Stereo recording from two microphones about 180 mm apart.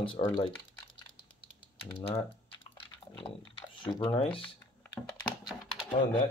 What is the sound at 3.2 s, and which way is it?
Typing, 30° left (ahead or behind).